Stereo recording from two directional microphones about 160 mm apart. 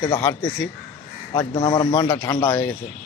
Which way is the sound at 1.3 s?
20° left (ahead or behind).